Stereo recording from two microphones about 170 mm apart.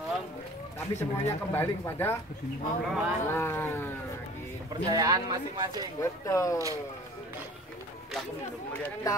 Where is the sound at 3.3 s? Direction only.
15° left (ahead or behind).